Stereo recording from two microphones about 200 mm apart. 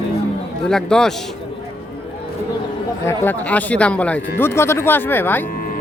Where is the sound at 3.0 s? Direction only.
10° left (ahead or behind).